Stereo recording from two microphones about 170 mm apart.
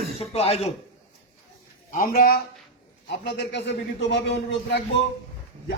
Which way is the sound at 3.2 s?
90° left.